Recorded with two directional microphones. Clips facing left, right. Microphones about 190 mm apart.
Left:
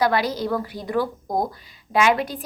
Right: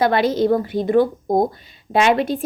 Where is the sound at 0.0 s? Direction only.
25° right (ahead or behind).